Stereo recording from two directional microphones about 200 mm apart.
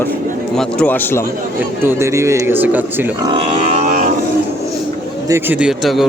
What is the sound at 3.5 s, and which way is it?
Livestock, 35° right (ahead or behind).